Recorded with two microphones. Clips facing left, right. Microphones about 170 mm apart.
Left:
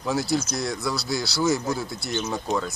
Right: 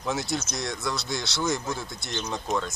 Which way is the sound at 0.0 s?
Centre (ahead or behind).